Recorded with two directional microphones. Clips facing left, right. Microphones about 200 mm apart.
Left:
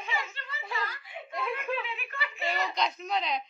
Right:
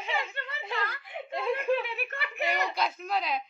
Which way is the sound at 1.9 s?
55° right (ahead or behind).